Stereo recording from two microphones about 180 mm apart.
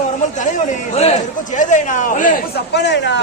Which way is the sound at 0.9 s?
40° left (ahead or behind).